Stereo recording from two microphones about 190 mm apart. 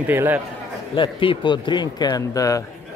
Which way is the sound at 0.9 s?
25° left (ahead or behind).